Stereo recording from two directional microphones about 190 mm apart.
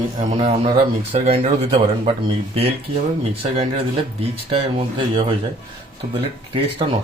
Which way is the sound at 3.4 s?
30° right (ahead or behind).